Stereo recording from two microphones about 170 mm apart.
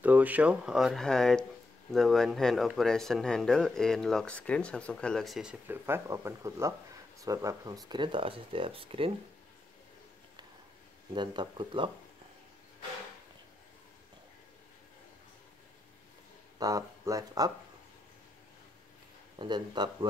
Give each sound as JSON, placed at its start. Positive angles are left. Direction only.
{"t": 0.0, "sound": "speech", "side_deg": -10}
{"t": 11.1, "sound": "speech", "side_deg": -30}
{"t": 16.5, "sound": "speech", "side_deg": -20}
{"t": 19.3, "sound": "speech", "side_deg": -25}